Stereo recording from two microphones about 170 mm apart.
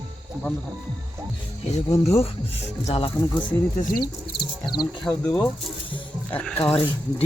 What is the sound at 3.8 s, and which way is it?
Speech, 65° left (ahead or behind).